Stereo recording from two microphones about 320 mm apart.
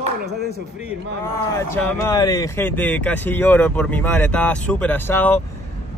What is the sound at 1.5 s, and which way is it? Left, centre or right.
Speech, centre.